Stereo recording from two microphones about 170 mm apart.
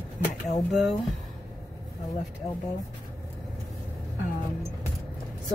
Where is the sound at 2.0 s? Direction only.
Centre (ahead or behind).